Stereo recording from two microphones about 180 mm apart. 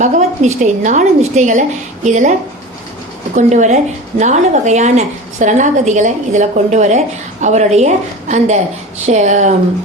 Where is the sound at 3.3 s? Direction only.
40° right (ahead or behind).